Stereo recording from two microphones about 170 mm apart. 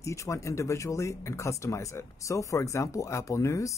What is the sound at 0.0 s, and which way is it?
Speech, 15° left (ahead or behind).